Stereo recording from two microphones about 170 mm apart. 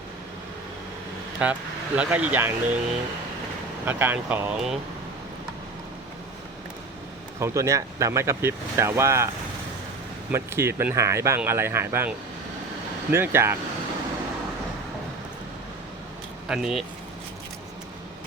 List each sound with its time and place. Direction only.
1.4 s speech: 10° right (ahead or behind)
3.8 s speech: 10° right (ahead or behind)
7.3 s speech: 20° right (ahead or behind)
10.3 s speech: 15° right (ahead or behind)
16.5 s speech: 5° right (ahead or behind)